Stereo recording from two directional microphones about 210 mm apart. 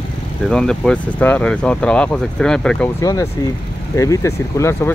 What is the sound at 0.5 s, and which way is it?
Speech, 5° left (ahead or behind).